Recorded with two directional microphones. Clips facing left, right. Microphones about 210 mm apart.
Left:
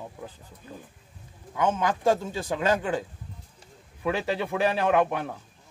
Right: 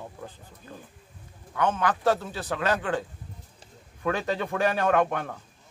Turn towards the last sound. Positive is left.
turn(degrees=10)  # may be behind; listen again after turning